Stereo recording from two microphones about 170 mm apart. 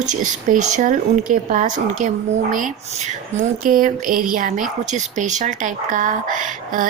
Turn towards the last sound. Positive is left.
turn(degrees=-50)  # may be behind; listen again after turning